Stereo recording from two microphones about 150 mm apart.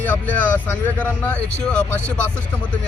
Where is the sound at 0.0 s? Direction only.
10° left (ahead or behind).